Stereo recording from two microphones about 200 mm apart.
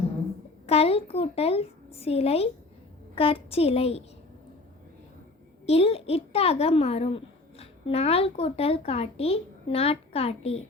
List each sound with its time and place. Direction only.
0.7 s speech: 30° left (ahead or behind)
5.6 s speech: 30° left (ahead or behind)